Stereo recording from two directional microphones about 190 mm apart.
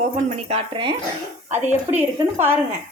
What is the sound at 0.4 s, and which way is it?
Speech, 30° right (ahead or behind).